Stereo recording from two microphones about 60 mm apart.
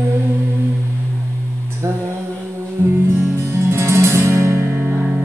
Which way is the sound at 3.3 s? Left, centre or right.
Right.